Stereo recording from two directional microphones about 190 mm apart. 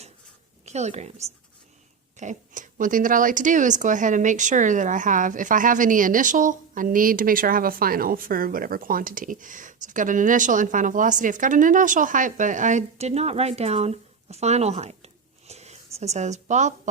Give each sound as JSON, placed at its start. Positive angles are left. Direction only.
{"t": 0.6, "sound": "a woman's voice", "side_deg": -35}